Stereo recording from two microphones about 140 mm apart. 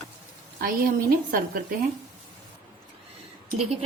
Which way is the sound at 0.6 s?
90° right.